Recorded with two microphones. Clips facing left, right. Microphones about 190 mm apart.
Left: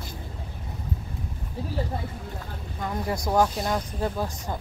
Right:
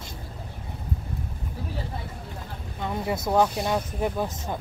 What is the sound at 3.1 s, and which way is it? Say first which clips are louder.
Speech: right 1 dB; 5° right (ahead or behind).